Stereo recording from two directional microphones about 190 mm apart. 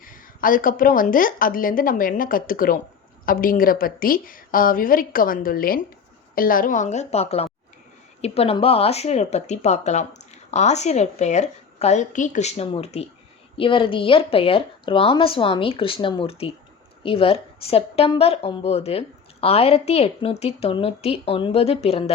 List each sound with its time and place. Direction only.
0.0 s a woman's voice: 45° left (ahead or behind)